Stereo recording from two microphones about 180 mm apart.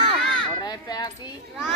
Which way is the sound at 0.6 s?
20° left (ahead or behind).